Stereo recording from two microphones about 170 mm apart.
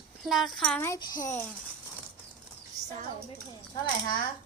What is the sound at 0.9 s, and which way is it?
Speech, 20° left (ahead or behind).